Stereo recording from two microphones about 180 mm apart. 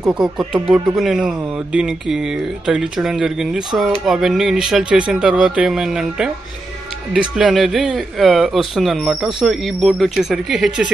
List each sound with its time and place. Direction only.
0.5 s speech: 5° right (ahead or behind)